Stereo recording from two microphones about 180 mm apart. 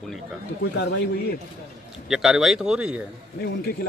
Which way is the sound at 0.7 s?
70° left (ahead or behind).